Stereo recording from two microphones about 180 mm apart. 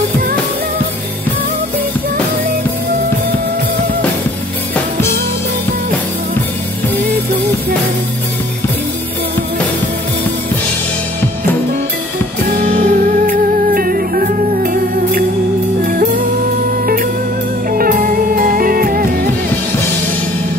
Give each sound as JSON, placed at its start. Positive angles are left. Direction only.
{"t": 12.5, "sound": "music", "side_deg": -50}
{"t": 17.6, "sound": "music", "side_deg": -55}